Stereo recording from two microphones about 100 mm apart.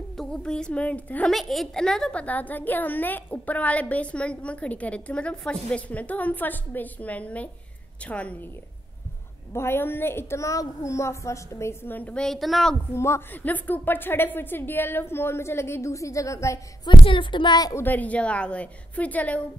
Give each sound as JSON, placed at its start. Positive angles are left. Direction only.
{"t": 0.2, "sound": "a woman's voice", "side_deg": 10}
{"t": 1.3, "sound": "a woman's voice", "side_deg": 0}
{"t": 9.5, "sound": "a woman's voice", "side_deg": 25}
{"t": 12.9, "sound": "a woman's voice", "side_deg": 25}
{"t": 16.8, "sound": "a woman's voice", "side_deg": 55}
{"t": 17.7, "sound": "a woman's voice", "side_deg": 15}